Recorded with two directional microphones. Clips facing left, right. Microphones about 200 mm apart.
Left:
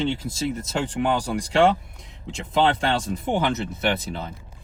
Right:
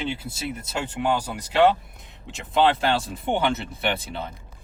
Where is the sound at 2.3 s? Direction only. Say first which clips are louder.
Right 1 dB; centre (ahead or behind).